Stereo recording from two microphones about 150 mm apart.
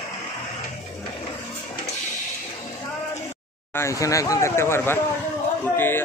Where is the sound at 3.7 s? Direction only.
20° left (ahead or behind).